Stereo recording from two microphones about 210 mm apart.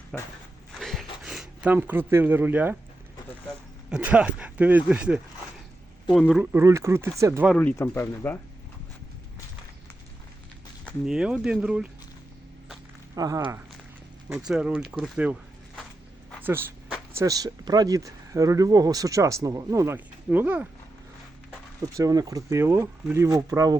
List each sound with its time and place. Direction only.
0.1 s speech: centre (ahead or behind)
0.7 s a sound: centre (ahead or behind)
1.2 s speech: centre (ahead or behind)
3.8 s speech: 5° right (ahead or behind)
7.5 s speech: 5° left (ahead or behind)
10.8 s speech: 5° right (ahead or behind)
13.1 s speech: 15° right (ahead or behind)
14.3 s speech: 5° right (ahead or behind)
21.8 s speech: 15° right (ahead or behind)